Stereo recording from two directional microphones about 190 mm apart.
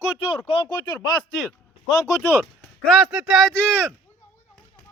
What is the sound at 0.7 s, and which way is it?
Speech, 20° left (ahead or behind).